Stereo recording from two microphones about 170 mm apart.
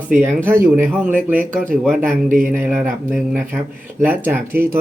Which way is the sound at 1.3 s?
50° right (ahead or behind).